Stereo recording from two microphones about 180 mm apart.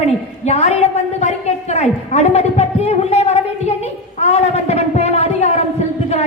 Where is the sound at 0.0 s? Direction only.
35° left (ahead or behind).